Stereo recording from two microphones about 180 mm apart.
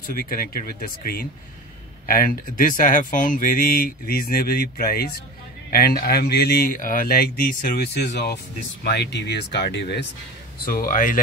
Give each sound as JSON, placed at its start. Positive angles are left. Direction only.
{"t": 0.0, "sound": "speech", "side_deg": 55}
{"t": 10.6, "sound": "speech", "side_deg": 50}